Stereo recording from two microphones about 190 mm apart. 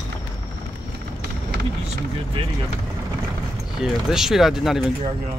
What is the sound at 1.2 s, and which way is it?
Run, 55° right (ahead or behind).